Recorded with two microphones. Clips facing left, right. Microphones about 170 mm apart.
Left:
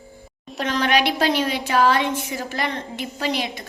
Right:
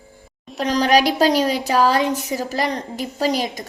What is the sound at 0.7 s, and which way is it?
A woman's voice, 35° right (ahead or behind).